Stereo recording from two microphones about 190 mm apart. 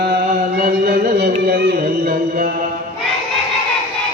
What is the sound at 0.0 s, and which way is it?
Chant, 50° right (ahead or behind).